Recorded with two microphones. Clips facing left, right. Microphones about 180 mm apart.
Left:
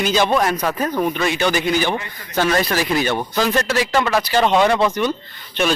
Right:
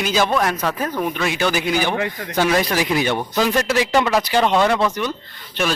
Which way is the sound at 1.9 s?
75° right (ahead or behind).